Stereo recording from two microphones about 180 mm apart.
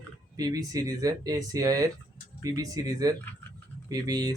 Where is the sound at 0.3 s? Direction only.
20° right (ahead or behind).